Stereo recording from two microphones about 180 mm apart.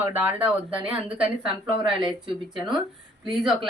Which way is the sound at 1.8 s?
25° right (ahead or behind).